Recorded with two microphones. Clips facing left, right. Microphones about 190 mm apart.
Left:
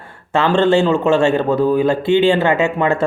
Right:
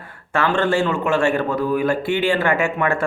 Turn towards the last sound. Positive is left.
turn(degrees=25)  # may be behind; listen again after turning